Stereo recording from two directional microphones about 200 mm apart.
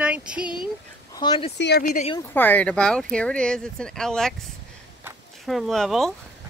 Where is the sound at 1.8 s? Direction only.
35° left (ahead or behind).